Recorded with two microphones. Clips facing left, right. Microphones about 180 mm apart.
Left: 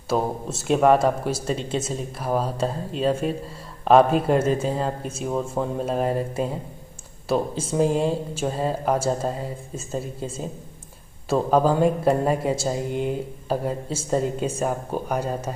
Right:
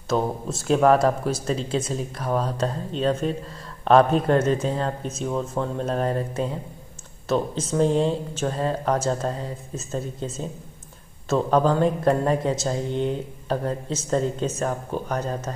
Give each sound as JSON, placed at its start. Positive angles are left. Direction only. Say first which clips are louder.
{"t": 0.1, "sound": "speech", "louder": "even", "side_deg": 5}